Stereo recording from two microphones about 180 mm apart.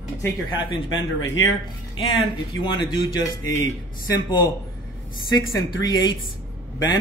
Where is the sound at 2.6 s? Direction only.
25° left (ahead or behind).